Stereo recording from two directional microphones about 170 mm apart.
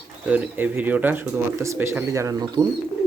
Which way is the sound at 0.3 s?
10° right (ahead or behind).